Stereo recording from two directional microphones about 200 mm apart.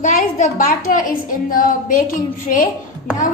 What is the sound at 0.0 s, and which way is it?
A woman's voice, 40° left (ahead or behind).